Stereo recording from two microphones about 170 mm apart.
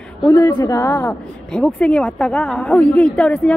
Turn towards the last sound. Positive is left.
turn(degrees=5)  # may be behind; listen again after turning